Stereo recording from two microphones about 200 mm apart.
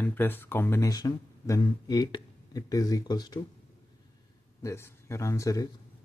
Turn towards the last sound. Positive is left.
turn(degrees=15)  # may be behind; listen again after turning